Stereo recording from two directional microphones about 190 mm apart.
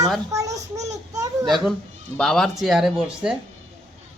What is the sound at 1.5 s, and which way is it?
Speech, centre (ahead or behind).